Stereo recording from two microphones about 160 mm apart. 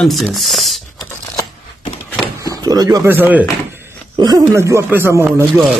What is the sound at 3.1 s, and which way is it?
Speech, 10° right (ahead or behind).